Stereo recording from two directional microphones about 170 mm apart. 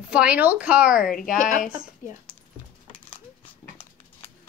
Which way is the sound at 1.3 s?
50° left (ahead or behind).